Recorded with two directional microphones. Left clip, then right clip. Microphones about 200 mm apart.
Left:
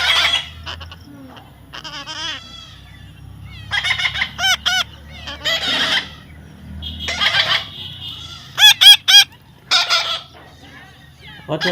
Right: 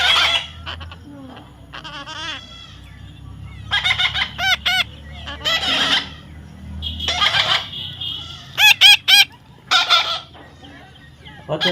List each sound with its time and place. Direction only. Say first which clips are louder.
0.0 s a sound: even; centre (ahead or behind)
1.7 s babbling: left 2 dB; centre (ahead or behind)
3.7 s fowl: right 1 dB; centre (ahead or behind)
4.4 s chicken: left 1 dB; 10° right (ahead or behind)
5.4 s a sound: even; 5° right (ahead or behind)
7.0 s a sound: even; 5° right (ahead or behind)
8.5 s fowl: left 2 dB; 15° right (ahead or behind)
9.6 s chicken: right 1 dB; centre (ahead or behind)
11.5 s dog: even; 30° left (ahead or behind)